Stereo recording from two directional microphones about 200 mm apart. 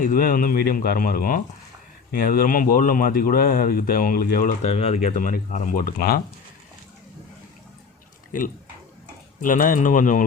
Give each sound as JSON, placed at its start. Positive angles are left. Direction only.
{"t": 0.0, "sound": "speech", "side_deg": 45}
{"t": 4.6, "sound": "speech", "side_deg": 35}
{"t": 8.3, "sound": "speech", "side_deg": 40}